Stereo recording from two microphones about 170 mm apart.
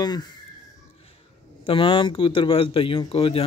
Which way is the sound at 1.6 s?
30° left (ahead or behind).